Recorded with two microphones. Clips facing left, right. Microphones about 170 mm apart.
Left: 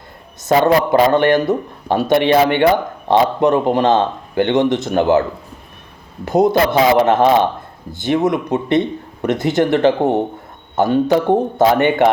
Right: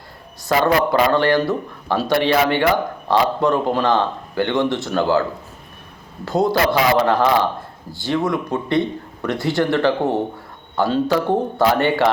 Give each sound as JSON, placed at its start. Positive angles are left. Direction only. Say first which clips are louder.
{"t": 0.4, "sound": "speech", "louder": "left 4 dB", "side_deg": 20}
{"t": 6.2, "sound": "speech", "louder": "left 4 dB", "side_deg": 20}